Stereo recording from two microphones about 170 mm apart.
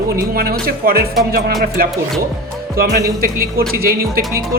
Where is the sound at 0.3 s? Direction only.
60° right (ahead or behind).